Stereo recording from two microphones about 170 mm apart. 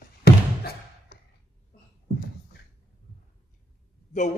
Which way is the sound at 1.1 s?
70° left (ahead or behind).